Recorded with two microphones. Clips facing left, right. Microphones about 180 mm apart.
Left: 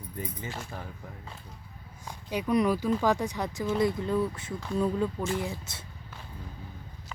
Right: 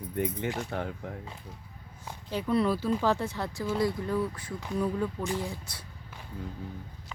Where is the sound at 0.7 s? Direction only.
80° right.